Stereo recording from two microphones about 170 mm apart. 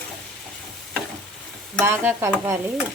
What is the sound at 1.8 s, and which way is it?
Speech, 15° right (ahead or behind).